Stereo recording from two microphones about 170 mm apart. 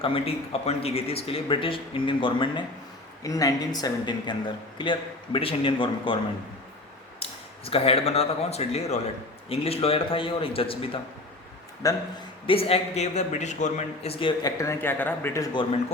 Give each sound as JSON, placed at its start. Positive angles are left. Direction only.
{"t": 0.0, "sound": "speech", "side_deg": 35}
{"t": 7.2, "sound": "speech", "side_deg": 35}
{"t": 11.8, "sound": "speech", "side_deg": 20}
{"t": 12.5, "sound": "speech", "side_deg": 35}
{"t": 14.6, "sound": "speech", "side_deg": 15}